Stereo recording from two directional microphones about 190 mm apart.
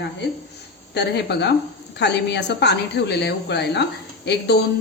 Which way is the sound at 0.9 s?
65° left (ahead or behind).